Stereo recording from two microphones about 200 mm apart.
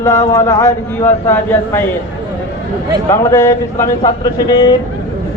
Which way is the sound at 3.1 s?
15° left (ahead or behind).